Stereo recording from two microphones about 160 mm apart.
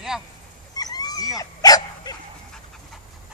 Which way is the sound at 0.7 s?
25° left (ahead or behind).